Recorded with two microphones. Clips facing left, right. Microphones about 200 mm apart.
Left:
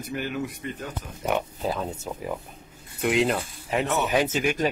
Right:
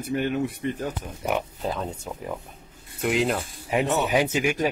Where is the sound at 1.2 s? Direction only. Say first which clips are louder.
Left 1 dB; 5° right (ahead or behind).